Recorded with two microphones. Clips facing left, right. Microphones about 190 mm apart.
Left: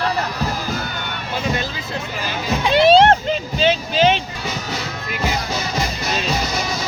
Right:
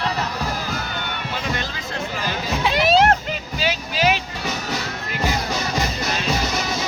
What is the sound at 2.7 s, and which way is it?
Music, 30° left (ahead or behind).